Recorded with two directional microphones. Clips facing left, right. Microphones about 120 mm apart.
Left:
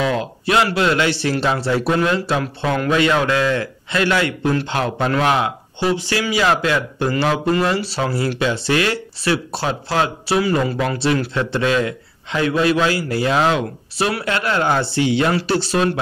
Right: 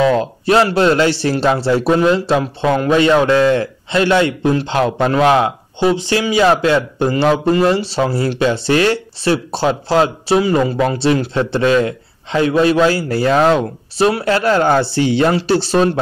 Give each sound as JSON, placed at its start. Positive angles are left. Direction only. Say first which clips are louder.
{"t": 0.0, "sound": "a man's voice", "louder": "right 6 dB", "side_deg": -35}
{"t": 13.9, "sound": "a man's voice", "louder": "right 7 dB", "side_deg": -30}